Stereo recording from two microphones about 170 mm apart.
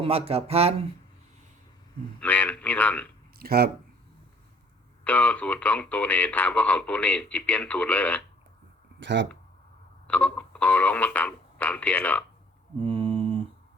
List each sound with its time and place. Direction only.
0.0 s speech: 35° right (ahead or behind)
2.2 s speech: 10° left (ahead or behind)
3.3 s speech: 65° right (ahead or behind)
5.0 s speech: 10° left (ahead or behind)
9.0 s speech: 90° right
10.1 s speech: 5° left (ahead or behind)
12.8 s a sound: 30° right (ahead or behind)